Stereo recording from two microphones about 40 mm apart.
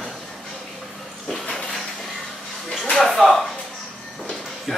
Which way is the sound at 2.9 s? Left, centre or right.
Centre.